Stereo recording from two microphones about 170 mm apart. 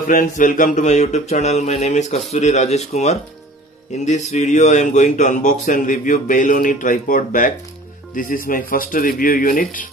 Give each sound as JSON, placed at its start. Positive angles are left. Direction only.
{"t": 0.1, "sound": "mantra", "side_deg": 50}
{"t": 4.0, "sound": "speech", "side_deg": 40}